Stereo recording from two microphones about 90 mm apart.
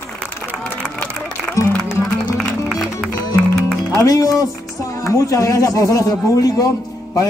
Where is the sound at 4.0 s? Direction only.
40° left (ahead or behind).